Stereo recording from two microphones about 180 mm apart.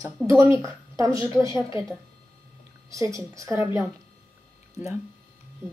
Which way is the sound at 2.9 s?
15° right (ahead or behind).